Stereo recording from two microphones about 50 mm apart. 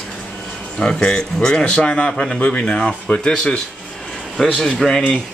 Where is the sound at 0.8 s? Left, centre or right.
Centre.